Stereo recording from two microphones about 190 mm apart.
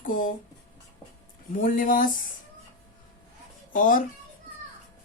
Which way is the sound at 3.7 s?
45° left (ahead or behind).